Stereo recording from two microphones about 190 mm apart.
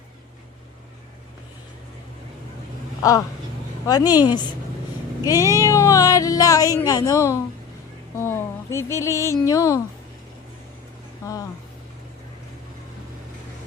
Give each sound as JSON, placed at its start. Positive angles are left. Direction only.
{"t": 3.0, "sound": "a woman's voice", "side_deg": 15}
{"t": 5.2, "sound": "speech", "side_deg": 20}